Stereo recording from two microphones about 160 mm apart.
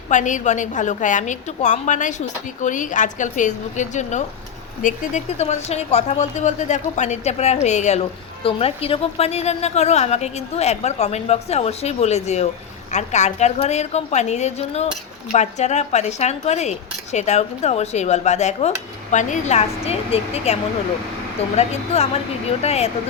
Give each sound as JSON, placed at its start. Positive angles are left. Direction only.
{"t": 0.1, "sound": "a woman's voice", "side_deg": 50}